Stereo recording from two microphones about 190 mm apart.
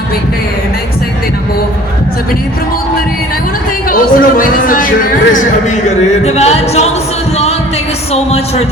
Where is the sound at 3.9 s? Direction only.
45° left (ahead or behind).